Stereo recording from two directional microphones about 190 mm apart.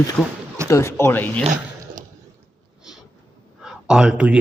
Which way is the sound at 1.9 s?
40° right (ahead or behind).